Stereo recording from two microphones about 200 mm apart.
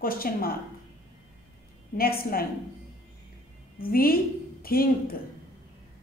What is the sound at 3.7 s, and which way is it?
A woman's voice, 45° left (ahead or behind).